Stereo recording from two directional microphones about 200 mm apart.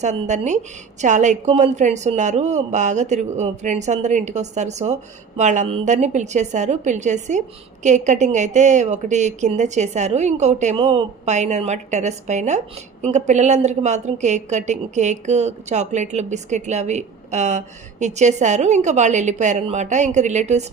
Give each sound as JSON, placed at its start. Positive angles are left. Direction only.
{"t": 0.0, "sound": "a woman's voice", "side_deg": -35}